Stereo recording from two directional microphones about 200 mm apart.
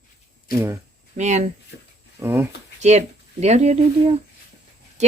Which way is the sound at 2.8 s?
35° right (ahead or behind).